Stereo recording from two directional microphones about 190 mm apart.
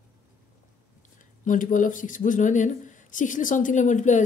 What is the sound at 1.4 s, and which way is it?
Speech, 45° left (ahead or behind).